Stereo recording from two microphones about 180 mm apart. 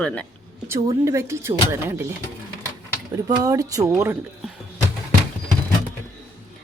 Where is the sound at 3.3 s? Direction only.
20° right (ahead or behind).